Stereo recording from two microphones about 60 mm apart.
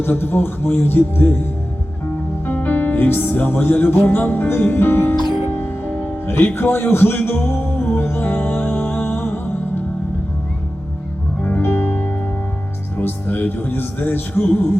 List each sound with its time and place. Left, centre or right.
0.0 s speech: left
2.5 s music: left
4.0 s speech: left
7.2 s music: left
11.4 s music: left
13.0 s speech: left